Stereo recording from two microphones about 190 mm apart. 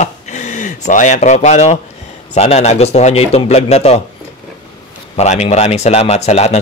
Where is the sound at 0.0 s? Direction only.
40° left (ahead or behind).